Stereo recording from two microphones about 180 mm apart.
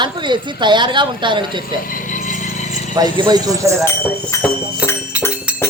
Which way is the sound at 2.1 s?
45° left (ahead or behind).